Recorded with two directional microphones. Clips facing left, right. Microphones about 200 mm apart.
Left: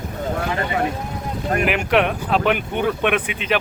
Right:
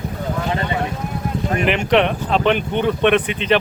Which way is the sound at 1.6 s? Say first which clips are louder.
Right 3 dB; 5° left (ahead or behind).